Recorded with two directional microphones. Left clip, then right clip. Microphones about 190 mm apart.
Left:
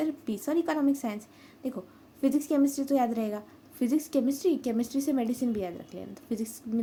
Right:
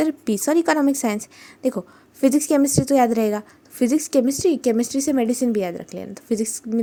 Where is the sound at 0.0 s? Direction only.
50° right (ahead or behind).